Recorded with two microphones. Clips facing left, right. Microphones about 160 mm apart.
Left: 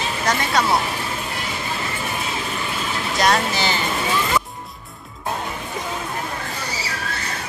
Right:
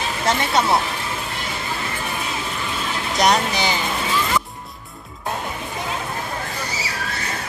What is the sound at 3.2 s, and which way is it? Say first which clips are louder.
Speech: right 1 dB; 15° right (ahead or behind).